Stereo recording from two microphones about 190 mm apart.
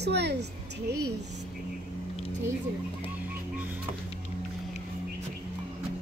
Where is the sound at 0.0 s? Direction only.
60° right (ahead or behind).